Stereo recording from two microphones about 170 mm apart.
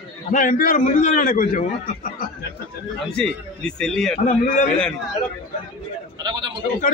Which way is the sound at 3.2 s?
5° left (ahead or behind).